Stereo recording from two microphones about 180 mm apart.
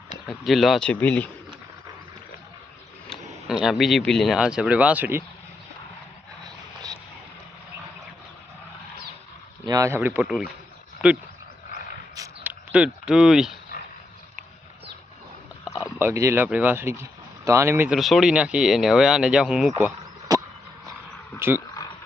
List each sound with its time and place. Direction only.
0.3 s speech: centre (ahead or behind)
3.1 s speech: centre (ahead or behind)
9.6 s speech: 20° right (ahead or behind)
12.1 s a sound: 15° right (ahead or behind)
15.6 s a sound: 20° left (ahead or behind)
16.0 s speech: 15° right (ahead or behind)
17.8 s speech: centre (ahead or behind)
19.7 s a sound: 15° right (ahead or behind)
21.3 s speech: 15° right (ahead or behind)